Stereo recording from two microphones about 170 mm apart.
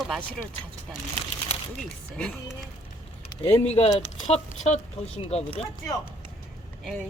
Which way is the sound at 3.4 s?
35° left (ahead or behind).